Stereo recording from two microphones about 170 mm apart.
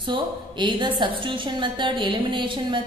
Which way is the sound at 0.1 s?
30° right (ahead or behind).